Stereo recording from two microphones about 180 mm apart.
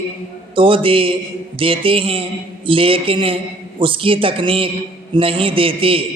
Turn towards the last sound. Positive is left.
turn(degrees=-30)  # may be behind; listen again after turning